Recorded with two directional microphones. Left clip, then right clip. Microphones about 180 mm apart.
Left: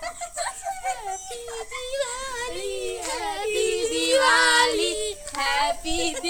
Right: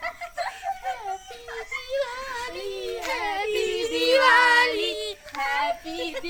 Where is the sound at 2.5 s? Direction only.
35° right (ahead or behind).